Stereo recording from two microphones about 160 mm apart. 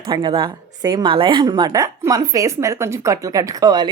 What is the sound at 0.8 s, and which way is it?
A woman's voice, 25° right (ahead or behind).